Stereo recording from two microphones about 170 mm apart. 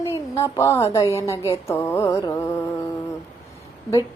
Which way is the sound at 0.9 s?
15° left (ahead or behind).